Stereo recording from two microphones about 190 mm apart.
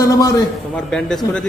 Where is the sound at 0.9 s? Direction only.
5° left (ahead or behind).